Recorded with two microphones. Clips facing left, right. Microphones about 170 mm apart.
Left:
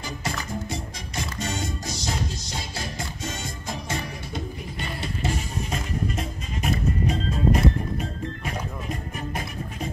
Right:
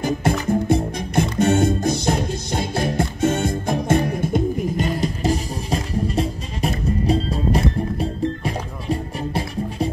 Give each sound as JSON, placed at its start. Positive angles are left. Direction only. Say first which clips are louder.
{"t": 0.0, "sound": "music", "louder": "right 12 dB", "side_deg": -55}